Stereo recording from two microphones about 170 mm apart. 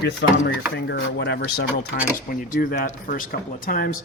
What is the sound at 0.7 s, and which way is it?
Speech, 75° left (ahead or behind).